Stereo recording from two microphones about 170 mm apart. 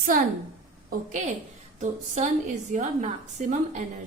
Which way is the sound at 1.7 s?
45° right (ahead or behind).